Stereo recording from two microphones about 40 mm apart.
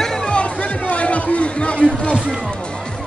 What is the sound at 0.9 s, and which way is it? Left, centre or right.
A man's voice, left.